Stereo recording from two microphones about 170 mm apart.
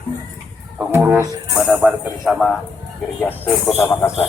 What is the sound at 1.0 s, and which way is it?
A man's voice, 10° right (ahead or behind).